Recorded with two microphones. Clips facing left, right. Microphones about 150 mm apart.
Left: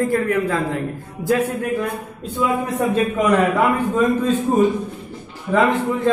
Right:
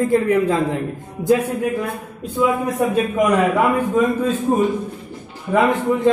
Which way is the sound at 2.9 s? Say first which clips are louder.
Left 1 dB; 10° right (ahead or behind).